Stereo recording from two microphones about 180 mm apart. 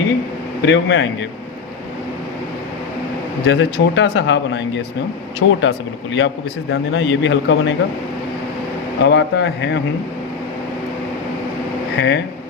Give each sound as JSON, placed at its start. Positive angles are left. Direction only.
{"t": 0.6, "sound": "speech", "side_deg": 85}
{"t": 3.4, "sound": "a man's voice", "side_deg": 80}
{"t": 9.0, "sound": "speech", "side_deg": 75}
{"t": 11.9, "sound": "speech", "side_deg": 80}